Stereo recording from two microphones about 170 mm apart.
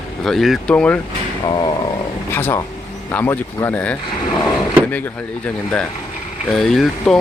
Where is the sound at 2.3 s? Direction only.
15° left (ahead or behind).